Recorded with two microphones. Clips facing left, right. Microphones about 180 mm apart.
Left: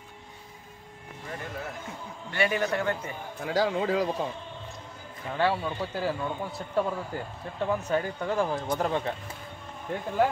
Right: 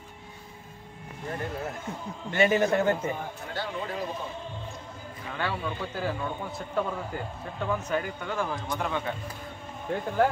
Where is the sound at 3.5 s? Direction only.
90° left.